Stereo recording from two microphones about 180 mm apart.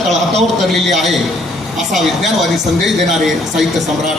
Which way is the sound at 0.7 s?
Centre (ahead or behind).